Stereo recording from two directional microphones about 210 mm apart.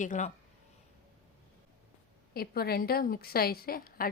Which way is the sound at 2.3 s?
45° left (ahead or behind).